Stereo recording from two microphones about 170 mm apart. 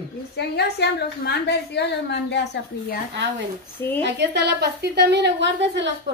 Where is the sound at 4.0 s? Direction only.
90° right.